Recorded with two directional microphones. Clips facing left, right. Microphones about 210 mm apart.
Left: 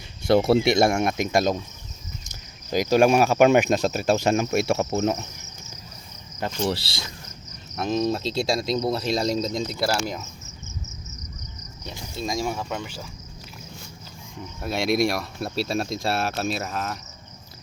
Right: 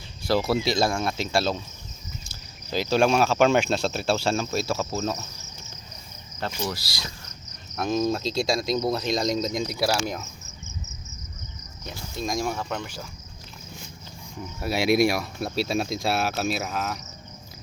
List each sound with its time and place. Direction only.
0.3 s speech: 25° left (ahead or behind)
2.9 s speech: 15° left (ahead or behind)
6.7 s speech: 30° left (ahead or behind)
7.8 s speech: centre (ahead or behind)
12.2 s speech: 5° left (ahead or behind)
14.6 s speech: 5° right (ahead or behind)